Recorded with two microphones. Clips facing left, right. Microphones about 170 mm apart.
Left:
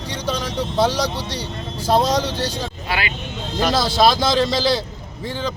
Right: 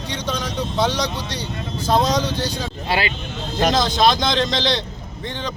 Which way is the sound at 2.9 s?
30° right (ahead or behind).